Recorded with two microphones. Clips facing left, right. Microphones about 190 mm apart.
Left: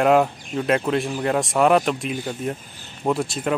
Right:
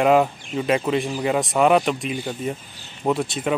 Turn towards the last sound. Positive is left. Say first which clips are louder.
# even
turn(degrees=0)  # may be behind; listen again after turning